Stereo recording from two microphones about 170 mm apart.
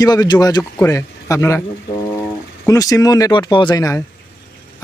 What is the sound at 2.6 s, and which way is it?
Speech, 20° left (ahead or behind).